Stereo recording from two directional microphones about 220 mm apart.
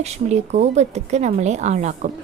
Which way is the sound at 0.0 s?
30° right (ahead or behind).